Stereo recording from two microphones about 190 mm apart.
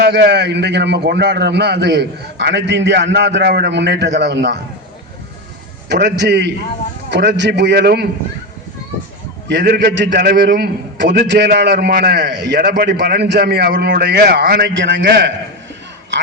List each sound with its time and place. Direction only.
0.0 s a man's voice: 55° right (ahead or behind)
5.9 s a man's voice: 65° right (ahead or behind)
9.6 s a man's voice: 60° right (ahead or behind)
14.8 s a man's voice: 80° right